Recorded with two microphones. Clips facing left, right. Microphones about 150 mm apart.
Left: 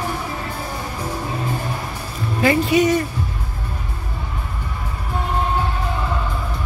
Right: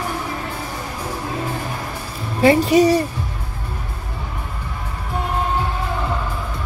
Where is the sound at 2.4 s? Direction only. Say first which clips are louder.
Right 3 dB; 30° right (ahead or behind).